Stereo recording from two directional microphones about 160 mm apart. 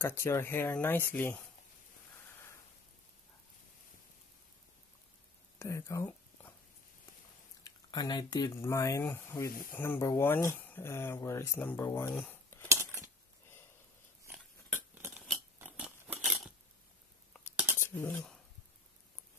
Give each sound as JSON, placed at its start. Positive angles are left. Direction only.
{"t": 0.0, "sound": "speech", "side_deg": 15}
{"t": 5.6, "sound": "a sound", "side_deg": 20}
{"t": 7.6, "sound": "speech", "side_deg": 25}
{"t": 12.6, "sound": "a sound", "side_deg": -15}
{"t": 15.6, "sound": "biting", "side_deg": -10}
{"t": 17.7, "sound": "cutlery", "side_deg": 15}